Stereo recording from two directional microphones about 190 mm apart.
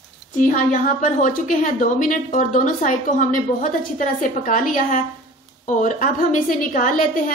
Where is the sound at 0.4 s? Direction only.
45° left (ahead or behind).